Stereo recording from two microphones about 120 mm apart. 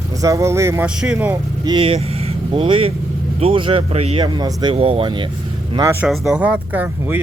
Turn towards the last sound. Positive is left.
turn(degrees=-15)  # may be behind; listen again after turning